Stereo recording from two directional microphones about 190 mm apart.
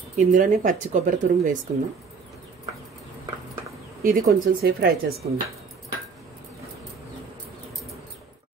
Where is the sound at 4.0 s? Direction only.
45° right (ahead or behind).